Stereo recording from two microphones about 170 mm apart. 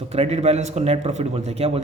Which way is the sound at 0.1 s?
40° right (ahead or behind).